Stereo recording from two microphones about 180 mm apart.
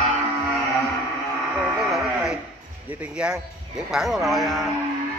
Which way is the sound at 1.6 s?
5° right (ahead or behind).